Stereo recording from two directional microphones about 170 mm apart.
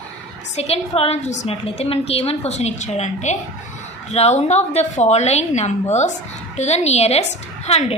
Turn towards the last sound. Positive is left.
turn(degrees=40)  # may be behind; listen again after turning